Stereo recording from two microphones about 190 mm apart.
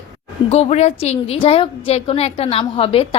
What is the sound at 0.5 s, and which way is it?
A woman's voice, 35° left (ahead or behind).